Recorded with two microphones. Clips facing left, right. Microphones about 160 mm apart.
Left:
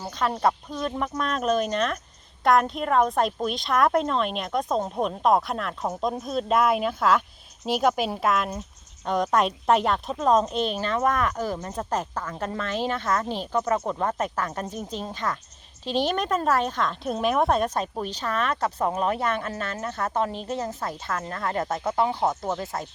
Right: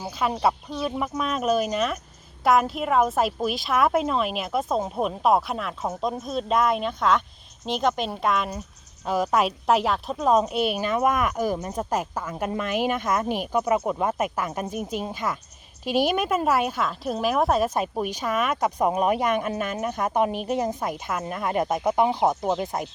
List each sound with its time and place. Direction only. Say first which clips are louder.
0.0 s a woman's voice: even; 10° right (ahead or behind)